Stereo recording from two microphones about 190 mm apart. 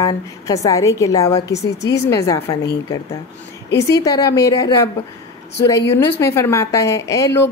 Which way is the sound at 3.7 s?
15° left (ahead or behind).